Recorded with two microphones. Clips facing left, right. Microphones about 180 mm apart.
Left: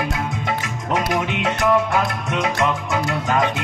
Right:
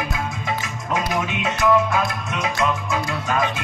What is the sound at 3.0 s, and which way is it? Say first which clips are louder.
Music: left 4 dB; 60° left (ahead or behind).